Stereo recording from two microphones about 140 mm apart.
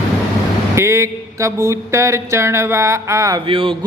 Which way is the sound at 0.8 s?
20° right (ahead or behind).